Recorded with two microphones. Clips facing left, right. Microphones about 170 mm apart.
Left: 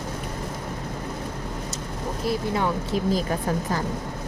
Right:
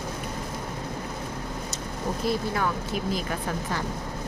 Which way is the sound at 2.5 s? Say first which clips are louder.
Left 3 dB; 25° left (ahead or behind).